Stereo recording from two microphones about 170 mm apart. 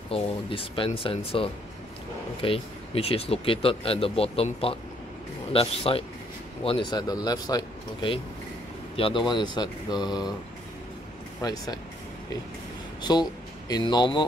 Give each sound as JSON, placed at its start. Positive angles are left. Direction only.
{"t": 0.1, "sound": "speech", "side_deg": 30}
{"t": 11.4, "sound": "speech", "side_deg": 20}
{"t": 13.0, "sound": "speech", "side_deg": 25}